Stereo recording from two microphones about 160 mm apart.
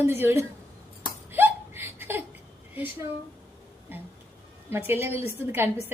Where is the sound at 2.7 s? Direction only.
15° right (ahead or behind).